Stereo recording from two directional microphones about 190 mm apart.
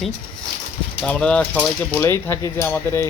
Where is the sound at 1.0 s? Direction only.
5° left (ahead or behind).